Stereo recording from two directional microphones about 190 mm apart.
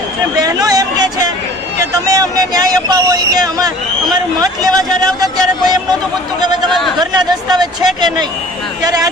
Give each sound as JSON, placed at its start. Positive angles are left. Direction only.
{"t": 0.3, "sound": "a sound", "side_deg": -20}
{"t": 2.0, "sound": "speech", "side_deg": -20}
{"t": 6.7, "sound": "speech", "side_deg": 0}
{"t": 7.0, "sound": "speech", "side_deg": -20}